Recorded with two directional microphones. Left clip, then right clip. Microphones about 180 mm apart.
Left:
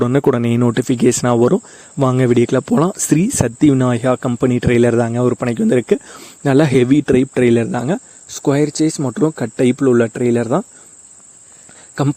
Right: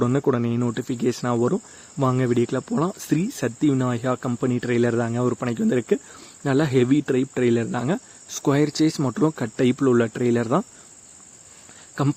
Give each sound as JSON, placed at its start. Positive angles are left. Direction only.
{"t": 0.0, "sound": "speech", "side_deg": 45}
{"t": 12.0, "sound": "speech", "side_deg": 35}